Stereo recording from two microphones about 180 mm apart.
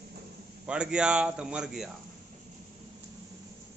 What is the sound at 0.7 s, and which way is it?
Speech, 5° right (ahead or behind).